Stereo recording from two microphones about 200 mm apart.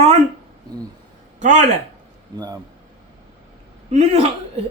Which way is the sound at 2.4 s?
15° right (ahead or behind).